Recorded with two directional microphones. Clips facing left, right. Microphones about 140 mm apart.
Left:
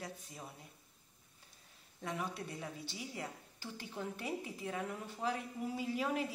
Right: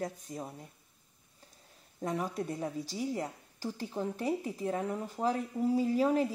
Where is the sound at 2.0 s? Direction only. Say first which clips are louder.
Right 7 dB; 40° right (ahead or behind).